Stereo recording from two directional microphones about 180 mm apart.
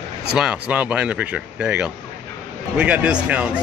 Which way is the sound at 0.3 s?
5° right (ahead or behind).